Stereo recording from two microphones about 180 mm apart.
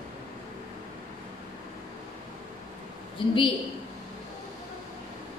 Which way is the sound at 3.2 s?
25° left (ahead or behind).